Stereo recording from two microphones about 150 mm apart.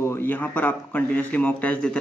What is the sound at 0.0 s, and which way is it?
A man's voice, 15° left (ahead or behind).